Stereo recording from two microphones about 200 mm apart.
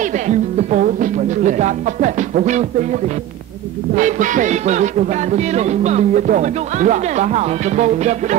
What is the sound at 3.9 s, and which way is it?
Speech, 40° right (ahead or behind).